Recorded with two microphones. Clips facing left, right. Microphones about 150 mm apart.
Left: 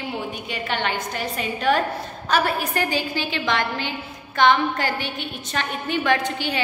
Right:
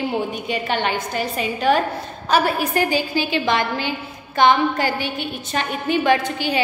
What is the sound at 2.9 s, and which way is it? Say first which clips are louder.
A woman's voice: right 5 dB; 5° right (ahead or behind).